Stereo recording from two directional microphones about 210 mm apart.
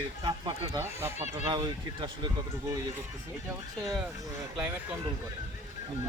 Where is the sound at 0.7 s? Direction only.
15° right (ahead or behind).